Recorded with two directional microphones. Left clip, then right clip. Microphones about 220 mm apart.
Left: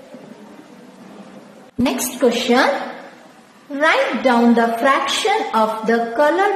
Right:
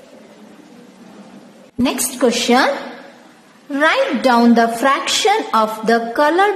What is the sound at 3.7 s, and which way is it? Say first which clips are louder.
A woman's voice: right 1 dB; 25° right (ahead or behind).